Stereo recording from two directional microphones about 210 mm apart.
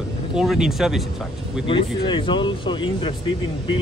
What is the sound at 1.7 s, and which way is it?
Speech, 25° left (ahead or behind).